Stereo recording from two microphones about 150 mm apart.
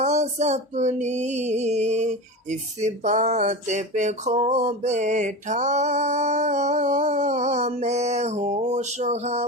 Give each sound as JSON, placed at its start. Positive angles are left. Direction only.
{"t": 0.0, "sound": "music", "side_deg": -50}